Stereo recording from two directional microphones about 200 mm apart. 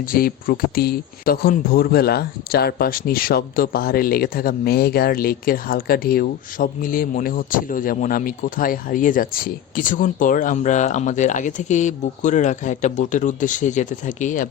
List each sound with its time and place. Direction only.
0.0 s speech: 45° left (ahead or behind)